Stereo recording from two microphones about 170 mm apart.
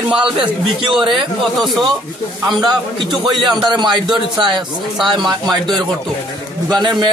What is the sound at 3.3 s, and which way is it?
Speech, 25° right (ahead or behind).